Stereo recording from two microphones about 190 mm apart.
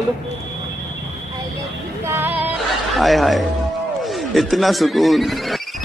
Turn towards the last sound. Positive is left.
turn(degrees=0)  # may be behind; listen again after turning